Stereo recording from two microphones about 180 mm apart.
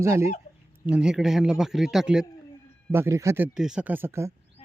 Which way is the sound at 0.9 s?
5° right (ahead or behind).